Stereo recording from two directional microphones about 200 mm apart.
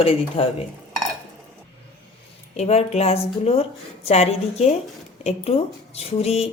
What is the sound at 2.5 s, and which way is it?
Speech, 30° left (ahead or behind).